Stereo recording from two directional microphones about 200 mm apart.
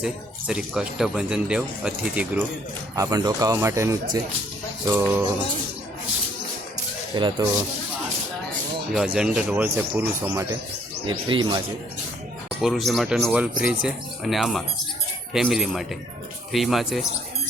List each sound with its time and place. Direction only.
0.0 s speech: 5° right (ahead or behind)
2.9 s a man's voice: 15° right (ahead or behind)
7.2 s speech: 25° right (ahead or behind)
9.0 s a man's voice: 5° right (ahead or behind)
11.0 s speech: 25° right (ahead or behind)
12.6 s speech: centre (ahead or behind)